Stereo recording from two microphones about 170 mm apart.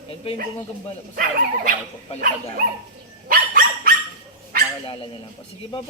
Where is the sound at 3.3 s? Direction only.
60° right (ahead or behind).